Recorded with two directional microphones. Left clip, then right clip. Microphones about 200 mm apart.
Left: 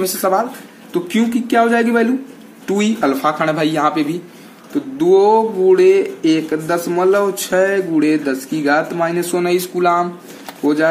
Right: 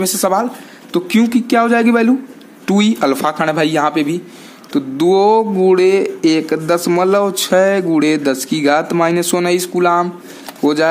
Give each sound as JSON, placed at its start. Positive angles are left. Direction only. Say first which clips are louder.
{"t": 0.0, "sound": "a man's voice", "louder": "right 1 dB", "side_deg": -40}
{"t": 4.9, "sound": "speech", "louder": "even", "side_deg": -50}
{"t": 10.6, "sound": "speech", "louder": "right 1 dB", "side_deg": -50}